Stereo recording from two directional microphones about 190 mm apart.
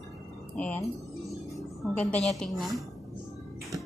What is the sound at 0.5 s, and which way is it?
A woman's voice, 5° left (ahead or behind).